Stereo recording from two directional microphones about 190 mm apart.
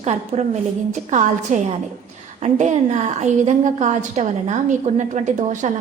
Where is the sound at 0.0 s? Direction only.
35° right (ahead or behind).